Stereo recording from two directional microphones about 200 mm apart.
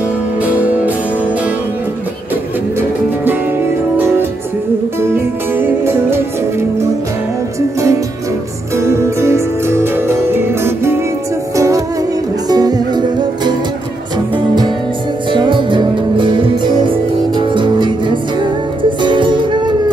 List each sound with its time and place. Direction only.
0.4 s music: 5° right (ahead or behind)
5.0 s music: 10° right (ahead or behind)
8.7 s music: 15° right (ahead or behind)
14.3 s music: 20° right (ahead or behind)